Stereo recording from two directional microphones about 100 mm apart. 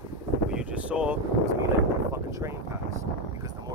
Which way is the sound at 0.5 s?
10° right (ahead or behind).